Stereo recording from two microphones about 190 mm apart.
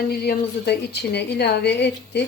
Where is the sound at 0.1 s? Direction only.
55° left (ahead or behind).